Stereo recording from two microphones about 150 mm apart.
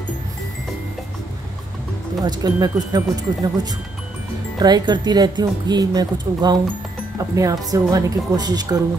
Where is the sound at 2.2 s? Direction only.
25° right (ahead or behind).